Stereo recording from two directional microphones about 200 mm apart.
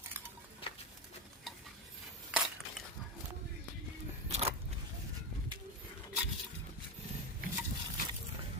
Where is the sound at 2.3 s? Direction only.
5° right (ahead or behind).